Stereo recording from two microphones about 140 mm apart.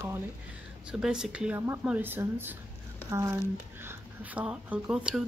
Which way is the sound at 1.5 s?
20° right (ahead or behind).